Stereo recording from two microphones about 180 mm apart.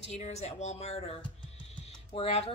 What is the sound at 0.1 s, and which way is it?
Speech, 35° left (ahead or behind).